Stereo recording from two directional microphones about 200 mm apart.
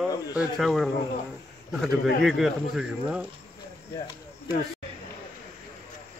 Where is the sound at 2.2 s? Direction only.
Centre (ahead or behind).